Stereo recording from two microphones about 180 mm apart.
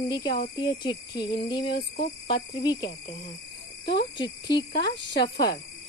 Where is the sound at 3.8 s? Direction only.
70° left (ahead or behind).